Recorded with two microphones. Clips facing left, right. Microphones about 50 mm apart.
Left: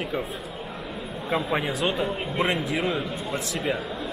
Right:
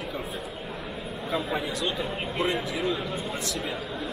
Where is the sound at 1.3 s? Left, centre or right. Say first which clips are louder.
Left 4 dB; left.